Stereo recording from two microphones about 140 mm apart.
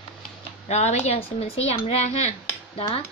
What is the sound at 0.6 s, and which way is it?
Speech, 55° left (ahead or behind).